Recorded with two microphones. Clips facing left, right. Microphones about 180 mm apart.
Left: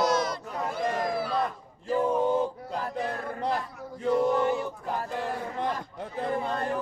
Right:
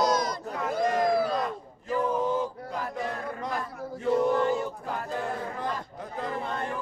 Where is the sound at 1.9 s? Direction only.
30° left (ahead or behind).